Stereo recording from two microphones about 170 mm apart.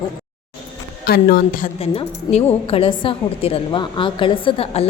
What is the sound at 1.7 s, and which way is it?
A woman's voice, 40° left (ahead or behind).